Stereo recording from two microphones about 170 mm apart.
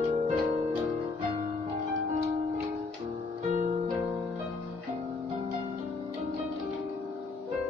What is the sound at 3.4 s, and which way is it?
Music, 40° right (ahead or behind).